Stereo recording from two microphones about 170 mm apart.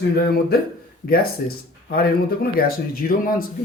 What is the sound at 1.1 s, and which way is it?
Speech, 65° left (ahead or behind).